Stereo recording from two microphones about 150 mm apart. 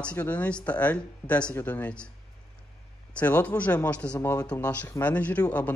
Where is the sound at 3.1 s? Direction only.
10° left (ahead or behind).